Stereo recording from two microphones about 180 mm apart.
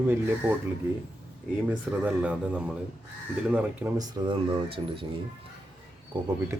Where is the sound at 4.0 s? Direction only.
25° right (ahead or behind).